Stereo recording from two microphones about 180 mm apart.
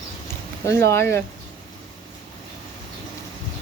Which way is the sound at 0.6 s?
15° left (ahead or behind).